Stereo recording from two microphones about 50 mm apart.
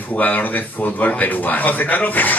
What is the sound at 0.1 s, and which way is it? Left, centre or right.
Speech, left.